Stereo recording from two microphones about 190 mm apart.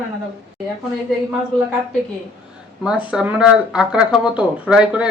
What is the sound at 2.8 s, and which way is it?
Speech, 5° right (ahead or behind).